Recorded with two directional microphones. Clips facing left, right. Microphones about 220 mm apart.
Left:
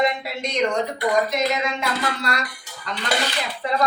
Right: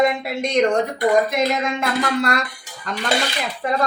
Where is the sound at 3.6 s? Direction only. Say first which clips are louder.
Right 3 dB; 50° right (ahead or behind).